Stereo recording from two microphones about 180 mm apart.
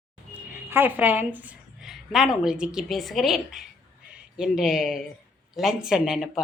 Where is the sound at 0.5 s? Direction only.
10° right (ahead or behind).